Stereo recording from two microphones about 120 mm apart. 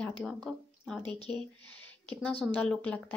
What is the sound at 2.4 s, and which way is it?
Speech, 10° left (ahead or behind).